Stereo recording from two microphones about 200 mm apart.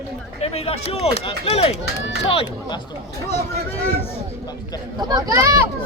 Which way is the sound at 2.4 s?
20° left (ahead or behind).